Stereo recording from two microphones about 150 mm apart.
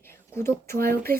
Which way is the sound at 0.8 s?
85° right.